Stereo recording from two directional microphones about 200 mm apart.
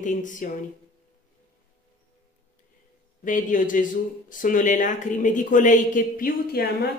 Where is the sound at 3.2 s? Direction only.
40° left (ahead or behind).